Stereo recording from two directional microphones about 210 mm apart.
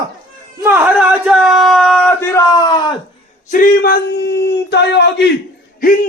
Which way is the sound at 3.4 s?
45° left (ahead or behind).